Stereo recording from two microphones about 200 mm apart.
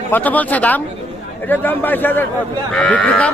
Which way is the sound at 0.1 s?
10° left (ahead or behind).